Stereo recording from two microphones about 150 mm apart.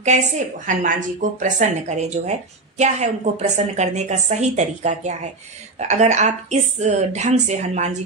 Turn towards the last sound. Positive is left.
turn(degrees=-50)  # may be behind; listen again after turning